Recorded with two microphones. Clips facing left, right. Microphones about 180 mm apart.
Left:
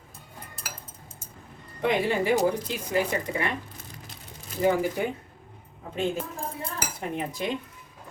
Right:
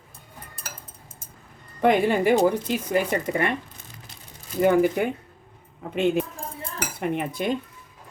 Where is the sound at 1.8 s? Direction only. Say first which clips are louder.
Right 5 dB; 50° right (ahead or behind).